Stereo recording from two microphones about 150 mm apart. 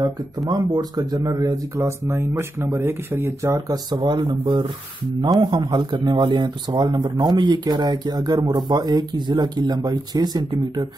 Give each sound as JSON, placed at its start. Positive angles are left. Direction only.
{"t": 0.5, "sound": "speech", "side_deg": -25}